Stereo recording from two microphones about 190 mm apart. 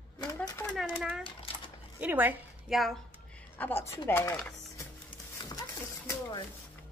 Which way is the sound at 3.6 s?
10° left (ahead or behind).